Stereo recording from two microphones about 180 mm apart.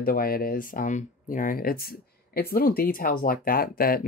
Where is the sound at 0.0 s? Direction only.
55° left (ahead or behind).